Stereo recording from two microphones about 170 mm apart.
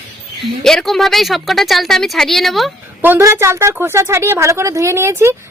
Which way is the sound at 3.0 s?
15° right (ahead or behind).